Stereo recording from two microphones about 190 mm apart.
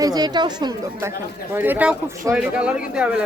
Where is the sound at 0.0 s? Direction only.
20° right (ahead or behind).